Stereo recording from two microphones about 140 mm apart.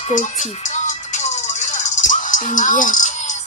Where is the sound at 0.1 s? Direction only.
60° left (ahead or behind).